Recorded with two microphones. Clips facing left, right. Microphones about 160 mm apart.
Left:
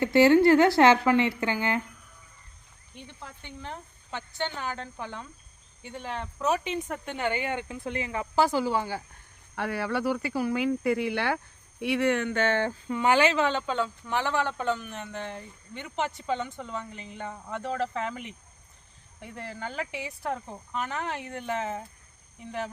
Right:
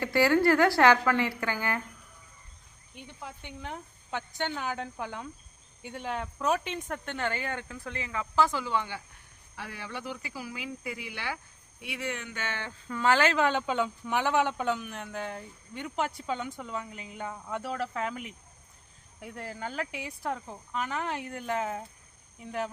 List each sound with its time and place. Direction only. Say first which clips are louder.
0.0 s a woman's voice: left 5 dB; 25° left (ahead or behind)
3.0 s speech: right 1 dB; 10° right (ahead or behind); by 7.3 s 5° left (ahead or behind)
7.3 s speech: left 6 dB; 15° left (ahead or behind)
7.9 s speech: left 4 dB; 30° left (ahead or behind)
9.6 s speech: left 11 dB; 65° left (ahead or behind)
12.9 s speech: left 2 dB; 15° left (ahead or behind)
13.3 s speech: even; 5° right (ahead or behind)